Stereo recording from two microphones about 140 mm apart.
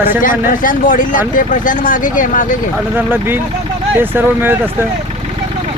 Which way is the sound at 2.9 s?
15° right (ahead or behind).